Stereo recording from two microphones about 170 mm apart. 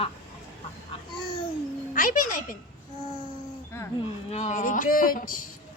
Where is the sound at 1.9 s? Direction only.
50° left (ahead or behind).